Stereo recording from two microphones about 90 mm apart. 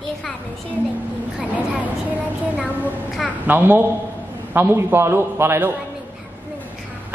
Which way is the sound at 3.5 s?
20° right (ahead or behind).